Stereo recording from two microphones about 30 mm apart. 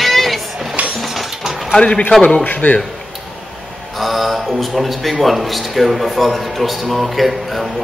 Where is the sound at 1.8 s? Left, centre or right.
Left.